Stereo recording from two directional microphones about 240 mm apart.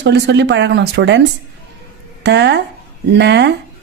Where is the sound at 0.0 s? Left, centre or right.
Right.